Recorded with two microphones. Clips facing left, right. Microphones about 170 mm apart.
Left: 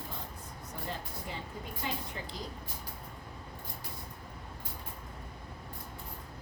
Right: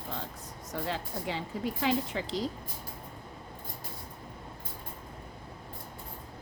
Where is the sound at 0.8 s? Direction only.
90° right.